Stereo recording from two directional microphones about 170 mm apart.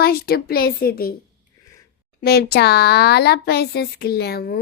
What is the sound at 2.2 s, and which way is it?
A child's voice, 65° left (ahead or behind).